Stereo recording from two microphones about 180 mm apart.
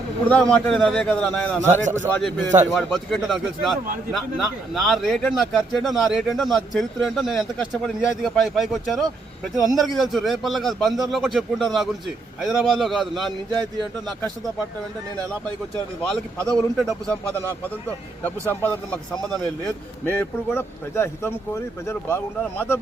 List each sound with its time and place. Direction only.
0.3 s speech: 5° left (ahead or behind)
1.6 s a man's voice: 40° right (ahead or behind)
2.0 s speech: 5° left (ahead or behind)
16.0 s speech: 5° left (ahead or behind)
18.2 s speech: 10° left (ahead or behind)